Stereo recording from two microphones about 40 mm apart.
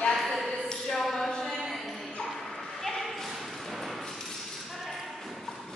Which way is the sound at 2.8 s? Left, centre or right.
Centre.